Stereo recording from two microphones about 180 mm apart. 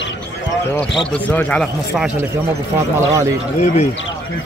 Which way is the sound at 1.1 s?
10° left (ahead or behind).